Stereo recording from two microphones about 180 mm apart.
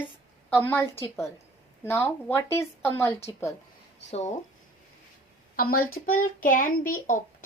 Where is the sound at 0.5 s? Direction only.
10° left (ahead or behind).